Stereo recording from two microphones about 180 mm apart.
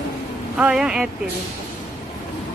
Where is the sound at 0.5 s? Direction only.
5° right (ahead or behind).